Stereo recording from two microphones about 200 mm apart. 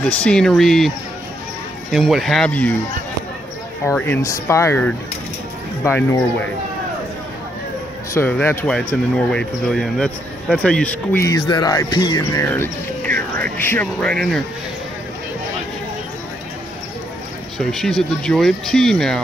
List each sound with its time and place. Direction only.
0.2 s speech: 5° left (ahead or behind)
3.8 s speech: 10° left (ahead or behind)
8.1 s speech: 10° left (ahead or behind)
17.6 s speech: centre (ahead or behind)